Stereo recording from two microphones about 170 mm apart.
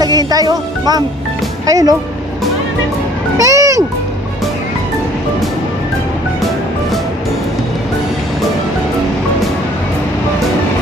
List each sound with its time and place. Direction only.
0.0 s music: 20° right (ahead or behind)
1.7 s speech: 20° right (ahead or behind)
3.3 s music: 20° right (ahead or behind)